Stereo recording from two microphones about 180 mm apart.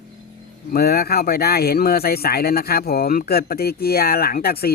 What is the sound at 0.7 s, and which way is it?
Speech, 60° left (ahead or behind).